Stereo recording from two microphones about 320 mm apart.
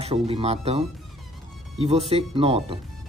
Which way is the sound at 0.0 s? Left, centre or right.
Centre.